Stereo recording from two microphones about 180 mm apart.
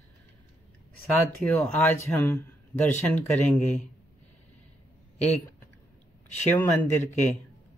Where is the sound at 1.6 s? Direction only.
10° left (ahead or behind).